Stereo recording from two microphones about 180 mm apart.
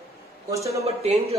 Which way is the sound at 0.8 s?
35° right (ahead or behind).